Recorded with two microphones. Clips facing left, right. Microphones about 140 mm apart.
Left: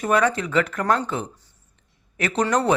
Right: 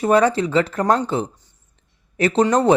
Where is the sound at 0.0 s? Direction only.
30° right (ahead or behind).